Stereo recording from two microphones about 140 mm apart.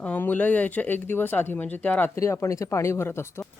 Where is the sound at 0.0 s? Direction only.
10° left (ahead or behind).